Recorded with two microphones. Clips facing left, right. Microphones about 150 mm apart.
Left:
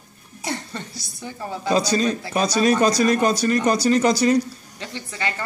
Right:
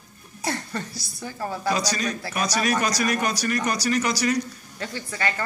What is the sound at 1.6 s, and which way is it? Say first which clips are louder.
A woman's voice: left 7 dB; 25° left (ahead or behind).